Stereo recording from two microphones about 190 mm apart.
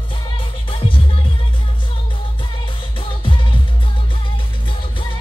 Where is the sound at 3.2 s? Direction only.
25° left (ahead or behind).